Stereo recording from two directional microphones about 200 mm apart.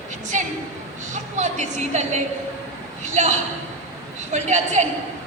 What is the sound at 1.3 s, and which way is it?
A woman's voice, 35° right (ahead or behind).